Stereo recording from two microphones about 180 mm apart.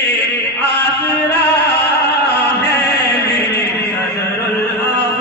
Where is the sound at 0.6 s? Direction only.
65° left (ahead or behind).